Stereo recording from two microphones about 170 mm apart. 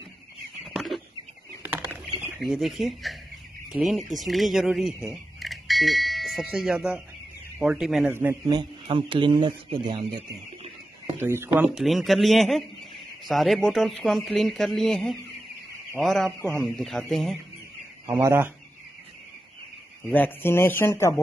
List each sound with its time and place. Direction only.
0.7 s a sound: centre (ahead or behind)
1.6 s bird: 10° right (ahead or behind)
2.4 s speech: centre (ahead or behind)
5.1 s bell: centre (ahead or behind)
7.6 s speech: 5° right (ahead or behind)
8.1 s a man's voice: 15° right (ahead or behind); by 11.1 s 35° right (ahead or behind)
11.1 s speech: 15° right (ahead or behind); by 17.4 s centre (ahead or behind)
18.1 s speech: 15° right (ahead or behind)
20.1 s speech: 10° left (ahead or behind)